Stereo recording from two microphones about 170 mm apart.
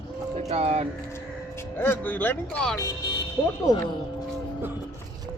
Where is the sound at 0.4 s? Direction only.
40° right (ahead or behind).